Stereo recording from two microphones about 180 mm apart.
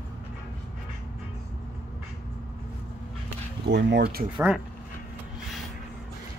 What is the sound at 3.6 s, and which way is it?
Speech, 70° right (ahead or behind).